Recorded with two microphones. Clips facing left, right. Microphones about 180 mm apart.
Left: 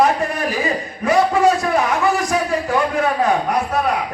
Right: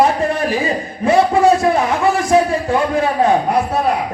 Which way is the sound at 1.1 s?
25° right (ahead or behind).